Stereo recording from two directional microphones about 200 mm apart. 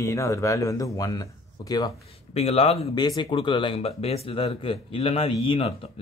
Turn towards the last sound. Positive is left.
turn(degrees=25)  # may be behind; listen again after turning